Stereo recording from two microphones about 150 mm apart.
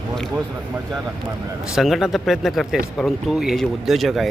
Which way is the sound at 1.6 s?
Centre (ahead or behind).